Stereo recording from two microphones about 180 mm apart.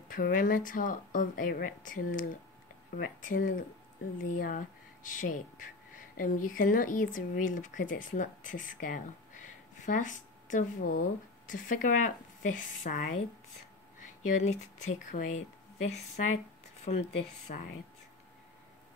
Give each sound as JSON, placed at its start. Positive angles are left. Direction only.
{"t": 0.1, "sound": "speech", "side_deg": 50}
{"t": 14.3, "sound": "speech", "side_deg": 40}